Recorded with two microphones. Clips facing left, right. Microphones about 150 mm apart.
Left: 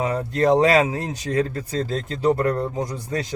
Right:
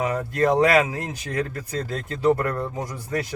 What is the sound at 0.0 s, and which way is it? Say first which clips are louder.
Speech: left 1 dB; 25° left (ahead or behind).